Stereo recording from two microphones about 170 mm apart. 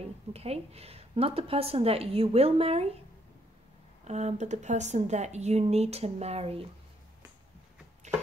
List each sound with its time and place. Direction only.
0.0 s a woman's voice: 35° right (ahead or behind)
4.1 s a woman's voice: 40° right (ahead or behind)
8.1 s a sound: 45° right (ahead or behind)